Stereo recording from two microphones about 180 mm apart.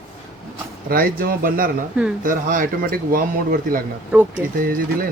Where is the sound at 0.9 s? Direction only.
55° right (ahead or behind).